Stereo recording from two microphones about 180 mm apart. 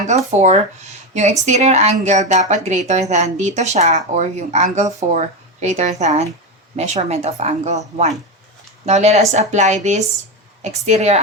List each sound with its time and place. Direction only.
0.0 s speech: 40° right (ahead or behind)